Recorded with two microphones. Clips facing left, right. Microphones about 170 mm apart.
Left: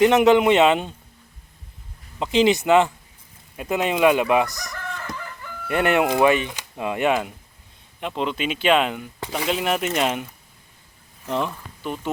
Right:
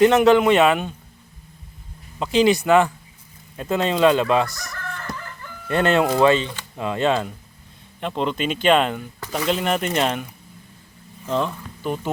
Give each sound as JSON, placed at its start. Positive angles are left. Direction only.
{"t": 0.0, "sound": "a man's voice", "side_deg": 20}
{"t": 2.1, "sound": "a man's voice", "side_deg": 20}
{"t": 8.0, "sound": "speech", "side_deg": 0}
{"t": 11.3, "sound": "speech", "side_deg": 15}
{"t": 11.8, "sound": "speech", "side_deg": 0}